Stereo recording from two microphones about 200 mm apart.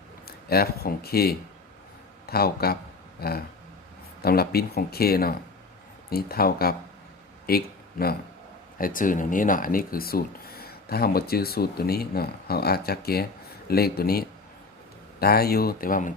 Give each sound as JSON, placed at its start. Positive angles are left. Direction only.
{"t": 0.3, "sound": "speech", "side_deg": 50}
{"t": 7.4, "sound": "a sound", "side_deg": 50}
{"t": 8.8, "sound": "speech", "side_deg": 45}